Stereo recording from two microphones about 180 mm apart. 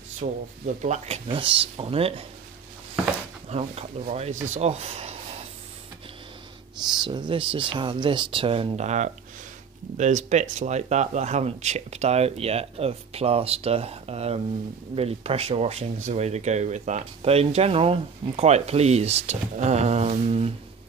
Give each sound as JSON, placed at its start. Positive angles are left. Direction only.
{"t": 0.2, "sound": "speech", "side_deg": -45}
{"t": 3.4, "sound": "speech", "side_deg": -35}
{"t": 7.1, "sound": "speech", "side_deg": -30}